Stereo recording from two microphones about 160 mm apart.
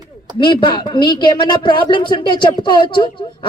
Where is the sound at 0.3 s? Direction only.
30° left (ahead or behind).